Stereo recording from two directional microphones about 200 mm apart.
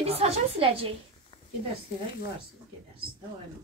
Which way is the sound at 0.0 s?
30° right (ahead or behind).